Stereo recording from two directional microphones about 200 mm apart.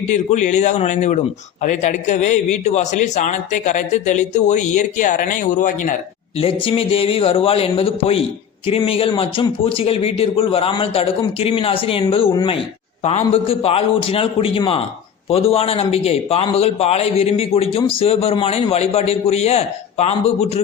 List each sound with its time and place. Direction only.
0.1 s a man's voice: 35° left (ahead or behind)